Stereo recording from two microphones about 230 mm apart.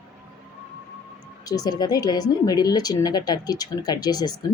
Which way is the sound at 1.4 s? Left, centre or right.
Centre.